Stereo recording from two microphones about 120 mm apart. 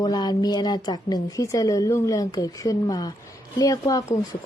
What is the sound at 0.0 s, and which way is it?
A woman's voice, 35° left (ahead or behind).